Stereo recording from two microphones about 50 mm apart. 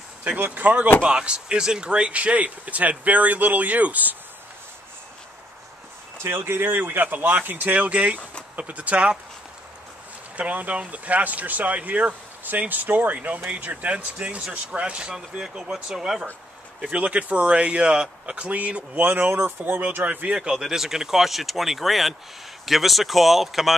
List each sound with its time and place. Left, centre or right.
0.4 s speech: right
1.0 s speech: right
6.2 s speech: right
10.3 s speech: right
15.7 s speech: centre
16.8 s speech: right
20.1 s speech: right
20.3 s speech: centre